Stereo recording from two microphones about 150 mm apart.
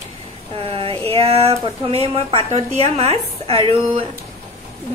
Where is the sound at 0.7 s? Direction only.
40° right (ahead or behind).